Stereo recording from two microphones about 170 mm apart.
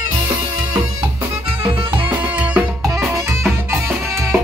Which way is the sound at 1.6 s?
30° right (ahead or behind).